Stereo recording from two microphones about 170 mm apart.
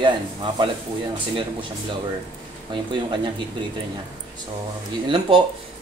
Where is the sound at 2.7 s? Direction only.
30° right (ahead or behind).